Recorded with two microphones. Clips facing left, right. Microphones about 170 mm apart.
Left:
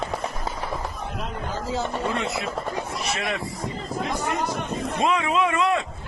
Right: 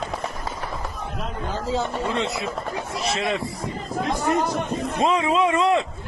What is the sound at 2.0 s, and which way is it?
A man's voice, 20° right (ahead or behind).